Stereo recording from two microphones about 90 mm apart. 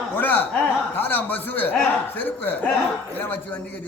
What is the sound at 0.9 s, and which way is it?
A man's voice, 20° left (ahead or behind).